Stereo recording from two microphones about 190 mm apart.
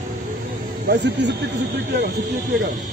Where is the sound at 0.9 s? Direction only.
65° right (ahead or behind).